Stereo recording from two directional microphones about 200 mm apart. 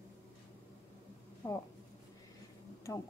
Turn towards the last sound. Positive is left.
turn(degrees=15)  # may be behind; listen again after turning